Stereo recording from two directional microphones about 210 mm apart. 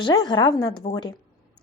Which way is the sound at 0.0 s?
20° left (ahead or behind).